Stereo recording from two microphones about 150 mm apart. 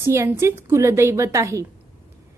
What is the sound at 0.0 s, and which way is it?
A woman's voice, 15° right (ahead or behind).